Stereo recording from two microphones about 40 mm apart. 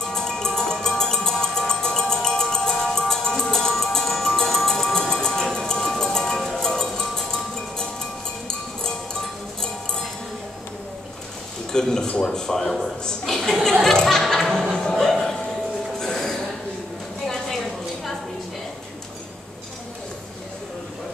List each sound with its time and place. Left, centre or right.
0.0 s music: centre
5.8 s a sound: centre
6.5 s music: centre
11.7 s a man's voice: centre
14.0 s music: centre